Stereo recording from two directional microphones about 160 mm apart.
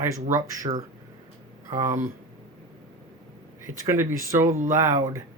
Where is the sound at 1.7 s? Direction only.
20° right (ahead or behind).